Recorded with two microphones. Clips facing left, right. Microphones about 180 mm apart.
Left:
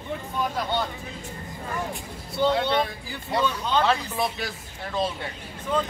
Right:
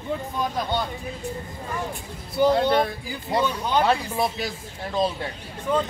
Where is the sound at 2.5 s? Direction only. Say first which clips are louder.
Right 4 dB; 40° right (ahead or behind).